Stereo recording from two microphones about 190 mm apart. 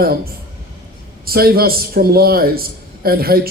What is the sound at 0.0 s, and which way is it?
A man's voice, 50° right (ahead or behind).